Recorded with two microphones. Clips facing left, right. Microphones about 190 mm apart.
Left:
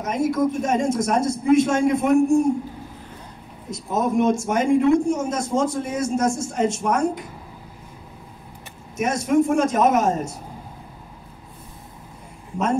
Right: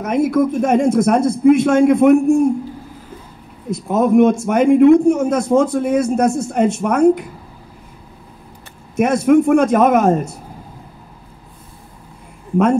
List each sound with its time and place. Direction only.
0.0 s a man's voice: 60° right (ahead or behind)
3.7 s a man's voice: 60° right (ahead or behind)
8.9 s a man's voice: 60° right (ahead or behind)